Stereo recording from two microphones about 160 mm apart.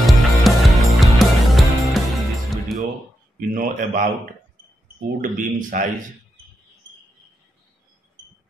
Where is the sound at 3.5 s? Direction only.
60° right (ahead or behind).